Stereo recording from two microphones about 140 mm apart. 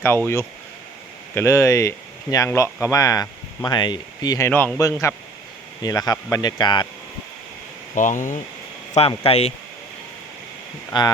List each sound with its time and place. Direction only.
1.4 s speech: 20° left (ahead or behind)
7.9 s speech: 65° left (ahead or behind)
8.9 s speech: 45° left (ahead or behind)
10.9 s speech: 35° left (ahead or behind)